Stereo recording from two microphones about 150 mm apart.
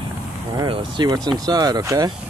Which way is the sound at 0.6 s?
30° right (ahead or behind).